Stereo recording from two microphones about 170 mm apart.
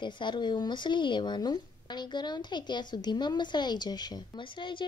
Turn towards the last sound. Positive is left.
turn(degrees=30)  # may be behind; listen again after turning